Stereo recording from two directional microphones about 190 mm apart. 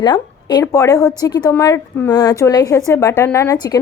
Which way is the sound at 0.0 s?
20° left (ahead or behind).